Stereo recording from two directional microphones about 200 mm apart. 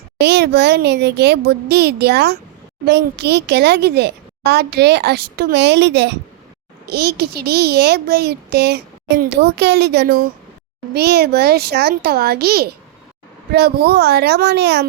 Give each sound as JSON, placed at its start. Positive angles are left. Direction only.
{"t": 0.2, "sound": "speech", "side_deg": -55}